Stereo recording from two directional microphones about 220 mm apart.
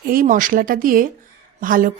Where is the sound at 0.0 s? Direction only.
40° right (ahead or behind).